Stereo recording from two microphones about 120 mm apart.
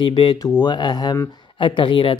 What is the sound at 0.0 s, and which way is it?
Speech, 40° left (ahead or behind).